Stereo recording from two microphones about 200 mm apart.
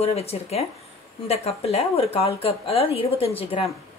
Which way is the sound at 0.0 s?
30° left (ahead or behind).